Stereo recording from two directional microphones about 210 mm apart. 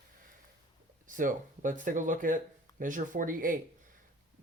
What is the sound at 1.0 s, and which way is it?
Speech, 40° right (ahead or behind).